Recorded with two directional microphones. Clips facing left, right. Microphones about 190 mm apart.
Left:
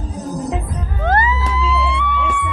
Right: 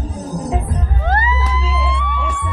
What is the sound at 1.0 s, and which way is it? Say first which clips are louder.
Music: left 3 dB; 55° left (ahead or behind).